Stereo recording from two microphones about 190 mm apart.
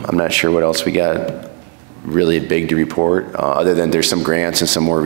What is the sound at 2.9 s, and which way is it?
Speech, 20° right (ahead or behind).